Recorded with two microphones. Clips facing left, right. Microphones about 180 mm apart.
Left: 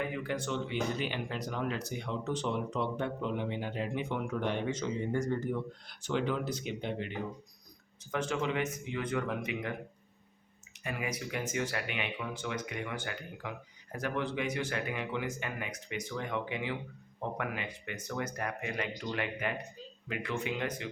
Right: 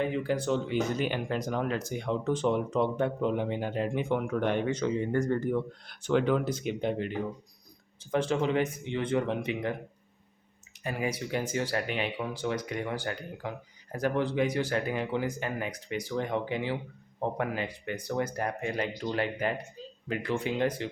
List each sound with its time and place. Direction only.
0.0 s speech: 30° right (ahead or behind); by 7.1 s 50° right (ahead or behind)
8.1 s speech: 30° right (ahead or behind)
10.8 s speech: 30° right (ahead or behind)